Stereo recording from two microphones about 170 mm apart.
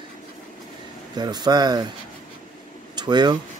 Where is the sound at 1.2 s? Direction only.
25° right (ahead or behind).